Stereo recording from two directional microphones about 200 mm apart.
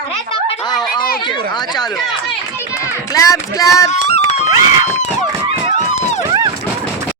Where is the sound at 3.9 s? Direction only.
35° left (ahead or behind).